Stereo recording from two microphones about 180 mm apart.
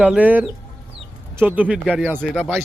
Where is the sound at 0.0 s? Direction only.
5° right (ahead or behind).